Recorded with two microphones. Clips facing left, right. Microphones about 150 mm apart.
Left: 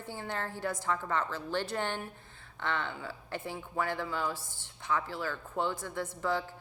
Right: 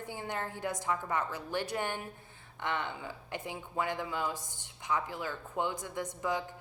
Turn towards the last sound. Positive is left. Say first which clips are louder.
# left 1 dB
turn(degrees=-15)  # may be behind; listen again after turning